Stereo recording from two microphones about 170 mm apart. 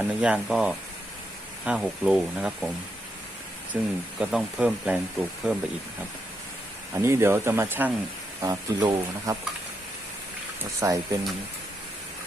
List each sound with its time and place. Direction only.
0.0 s speech: 5° right (ahead or behind)
3.7 s speech: 5° right (ahead or behind)
6.9 s speech: 15° right (ahead or behind)
8.4 s speech: 25° right (ahead or behind)
10.8 s speech: 20° right (ahead or behind)